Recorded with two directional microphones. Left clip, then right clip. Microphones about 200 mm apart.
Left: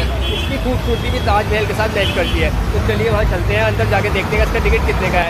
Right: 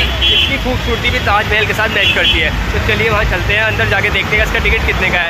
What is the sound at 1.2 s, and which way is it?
Speech, centre (ahead or behind).